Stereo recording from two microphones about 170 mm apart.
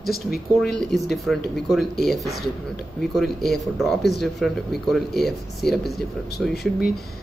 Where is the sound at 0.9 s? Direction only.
Centre (ahead or behind).